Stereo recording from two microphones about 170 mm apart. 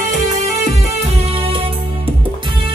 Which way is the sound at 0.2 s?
45° right (ahead or behind).